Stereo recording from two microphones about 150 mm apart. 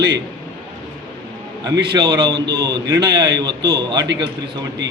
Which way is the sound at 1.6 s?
30° right (ahead or behind).